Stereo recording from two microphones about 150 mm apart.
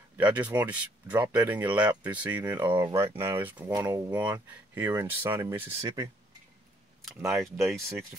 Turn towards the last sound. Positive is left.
turn(degrees=-20)  # may be behind; listen again after turning